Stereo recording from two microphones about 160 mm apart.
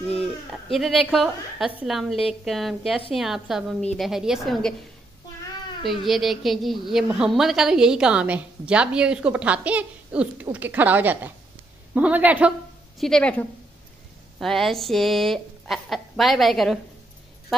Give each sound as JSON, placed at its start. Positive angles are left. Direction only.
{"t": 0.5, "sound": "a woman's voice", "side_deg": 0}
{"t": 5.9, "sound": "a woman's voice", "side_deg": 0}
{"t": 13.0, "sound": "a woman's voice", "side_deg": 5}